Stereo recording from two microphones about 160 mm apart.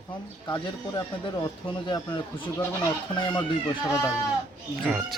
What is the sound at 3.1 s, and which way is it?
Speech, 30° left (ahead or behind).